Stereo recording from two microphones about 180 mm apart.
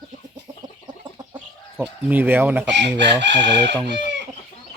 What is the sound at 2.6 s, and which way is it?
Chicken, 75° right (ahead or behind).